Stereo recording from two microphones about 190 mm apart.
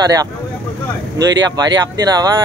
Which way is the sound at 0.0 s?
20° right (ahead or behind).